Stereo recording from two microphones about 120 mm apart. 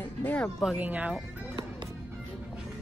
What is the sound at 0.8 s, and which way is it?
Speech, 15° right (ahead or behind).